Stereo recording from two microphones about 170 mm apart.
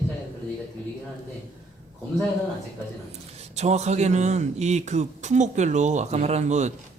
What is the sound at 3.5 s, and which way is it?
Speech, 40° right (ahead or behind).